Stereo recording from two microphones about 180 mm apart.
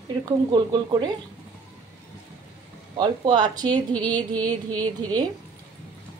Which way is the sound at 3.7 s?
5° left (ahead or behind).